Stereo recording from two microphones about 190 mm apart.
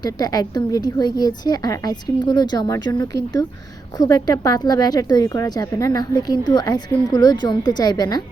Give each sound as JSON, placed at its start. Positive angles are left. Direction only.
{"t": 0.0, "sound": "a woman's voice", "side_deg": 20}